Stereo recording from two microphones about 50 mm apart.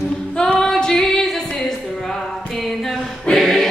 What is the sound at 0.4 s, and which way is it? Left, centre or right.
Female singing, centre.